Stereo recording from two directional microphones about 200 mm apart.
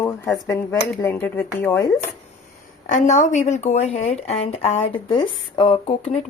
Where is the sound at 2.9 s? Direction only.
40° left (ahead or behind).